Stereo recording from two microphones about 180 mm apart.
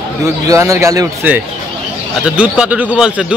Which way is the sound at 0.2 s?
15° right (ahead or behind).